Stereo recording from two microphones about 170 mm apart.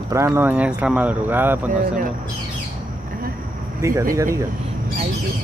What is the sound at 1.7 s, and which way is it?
Speech, 50° right (ahead or behind).